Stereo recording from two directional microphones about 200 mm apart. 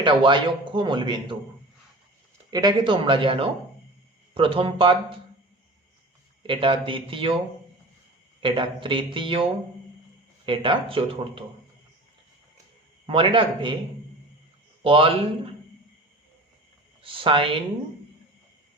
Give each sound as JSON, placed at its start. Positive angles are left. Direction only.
{"t": 0.0, "sound": "speech", "side_deg": -25}
{"t": 2.5, "sound": "speech", "side_deg": -20}
{"t": 6.5, "sound": "speech", "side_deg": -25}
{"t": 8.4, "sound": "speech", "side_deg": -25}
{"t": 13.1, "sound": "speech", "side_deg": -25}
{"t": 14.8, "sound": "speech", "side_deg": -25}
{"t": 17.0, "sound": "speech", "side_deg": -25}